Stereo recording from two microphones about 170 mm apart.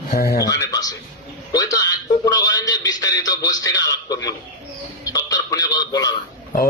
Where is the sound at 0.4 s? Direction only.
20° left (ahead or behind).